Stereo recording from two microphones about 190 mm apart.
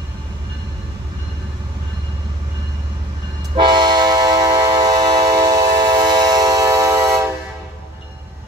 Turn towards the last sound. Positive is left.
turn(degrees=-15)  # may be behind; listen again after turning